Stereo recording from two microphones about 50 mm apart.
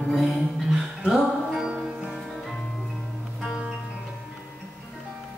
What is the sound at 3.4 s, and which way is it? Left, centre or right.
Music, centre.